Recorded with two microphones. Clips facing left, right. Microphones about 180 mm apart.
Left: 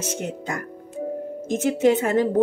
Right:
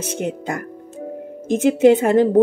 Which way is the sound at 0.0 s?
55° right (ahead or behind).